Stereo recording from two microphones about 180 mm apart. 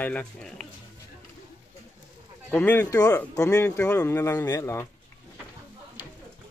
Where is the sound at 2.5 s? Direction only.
10° left (ahead or behind).